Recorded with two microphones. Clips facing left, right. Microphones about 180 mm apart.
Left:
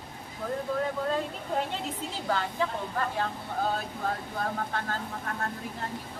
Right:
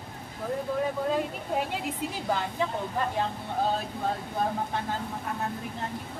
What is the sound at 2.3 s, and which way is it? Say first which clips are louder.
Speech: even; 15° right (ahead or behind).